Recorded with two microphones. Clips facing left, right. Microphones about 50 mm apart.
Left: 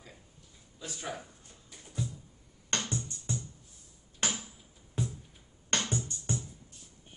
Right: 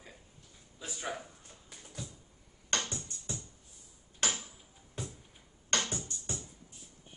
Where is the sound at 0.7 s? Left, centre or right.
Centre.